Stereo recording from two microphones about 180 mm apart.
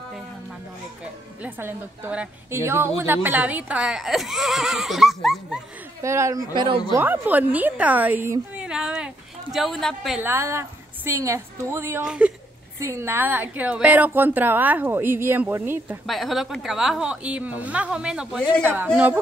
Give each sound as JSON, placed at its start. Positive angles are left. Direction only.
{"t": 1.4, "sound": "speech", "side_deg": -10}
{"t": 6.0, "sound": "speech", "side_deg": -15}
{"t": 6.9, "sound": "speech", "side_deg": -10}
{"t": 10.2, "sound": "speech", "side_deg": -15}
{"t": 16.1, "sound": "speech", "side_deg": 0}